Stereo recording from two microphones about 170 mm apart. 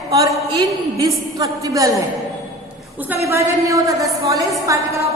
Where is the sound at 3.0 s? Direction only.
15° right (ahead or behind).